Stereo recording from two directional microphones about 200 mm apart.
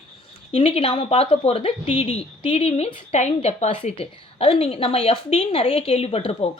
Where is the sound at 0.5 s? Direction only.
25° left (ahead or behind).